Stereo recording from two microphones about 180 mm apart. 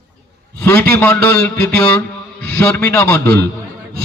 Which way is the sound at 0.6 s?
15° left (ahead or behind).